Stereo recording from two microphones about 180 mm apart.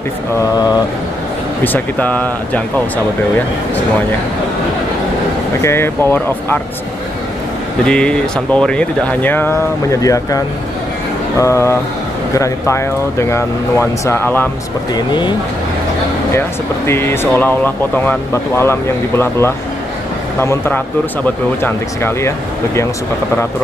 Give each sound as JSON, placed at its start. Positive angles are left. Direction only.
{"t": 1.6, "sound": "speech", "side_deg": 10}
{"t": 5.6, "sound": "speech", "side_deg": 15}
{"t": 7.8, "sound": "speech", "side_deg": 5}
{"t": 15.0, "sound": "speech", "side_deg": 25}
{"t": 16.3, "sound": "speech", "side_deg": 15}